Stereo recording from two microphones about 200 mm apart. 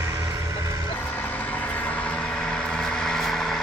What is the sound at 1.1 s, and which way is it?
Vehicle, 10° left (ahead or behind).